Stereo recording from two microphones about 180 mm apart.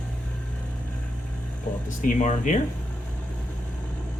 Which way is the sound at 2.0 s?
45° left (ahead or behind).